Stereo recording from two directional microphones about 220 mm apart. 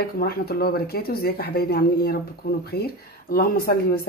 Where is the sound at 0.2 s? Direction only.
45° left (ahead or behind).